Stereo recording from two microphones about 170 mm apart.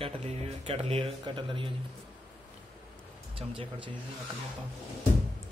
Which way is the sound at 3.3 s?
30° right (ahead or behind).